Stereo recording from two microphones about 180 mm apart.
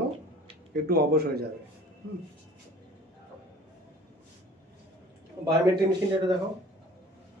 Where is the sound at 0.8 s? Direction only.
60° right (ahead or behind).